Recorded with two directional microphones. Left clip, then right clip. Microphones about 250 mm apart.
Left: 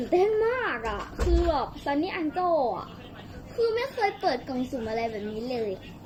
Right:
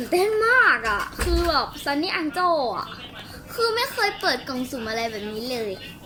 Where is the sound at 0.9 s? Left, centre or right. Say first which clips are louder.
Right 4 dB; right.